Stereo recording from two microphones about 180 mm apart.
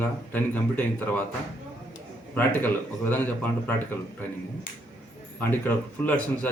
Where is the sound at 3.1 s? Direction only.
10° left (ahead or behind).